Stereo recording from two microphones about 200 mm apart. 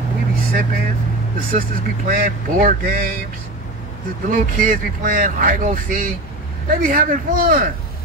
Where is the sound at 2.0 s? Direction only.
45° right (ahead or behind).